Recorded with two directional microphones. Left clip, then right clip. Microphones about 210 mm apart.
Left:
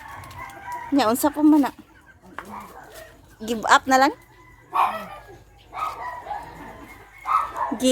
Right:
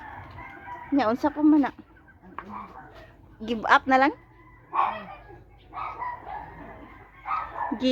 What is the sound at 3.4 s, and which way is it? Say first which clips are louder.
Speech: left 3 dB; 5° left (ahead or behind).